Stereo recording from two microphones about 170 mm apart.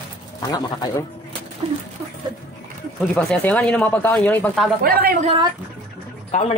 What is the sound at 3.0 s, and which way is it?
Speech, 10° left (ahead or behind).